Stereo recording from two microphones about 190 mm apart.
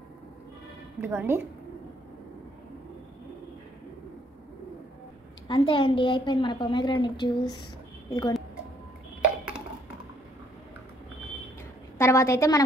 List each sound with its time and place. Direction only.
1.0 s a woman's voice: 15° right (ahead or behind)
5.5 s a woman's voice: 25° left (ahead or behind)
12.0 s a woman's voice: 15° left (ahead or behind)